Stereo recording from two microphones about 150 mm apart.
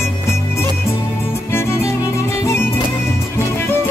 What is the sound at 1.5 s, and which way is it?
Music, 15° left (ahead or behind).